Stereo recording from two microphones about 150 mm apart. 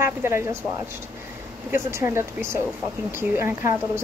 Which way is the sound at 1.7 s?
15° right (ahead or behind).